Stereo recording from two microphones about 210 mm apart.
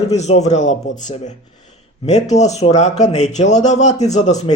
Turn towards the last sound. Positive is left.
turn(degrees=35)  # may be behind; listen again after turning